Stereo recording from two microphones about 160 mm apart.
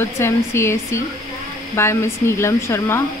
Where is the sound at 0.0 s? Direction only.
15° left (ahead or behind).